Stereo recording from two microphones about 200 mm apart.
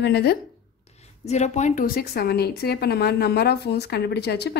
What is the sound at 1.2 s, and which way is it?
Speech, 35° left (ahead or behind).